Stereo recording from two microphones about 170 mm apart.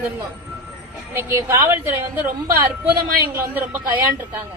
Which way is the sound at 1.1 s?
15° right (ahead or behind).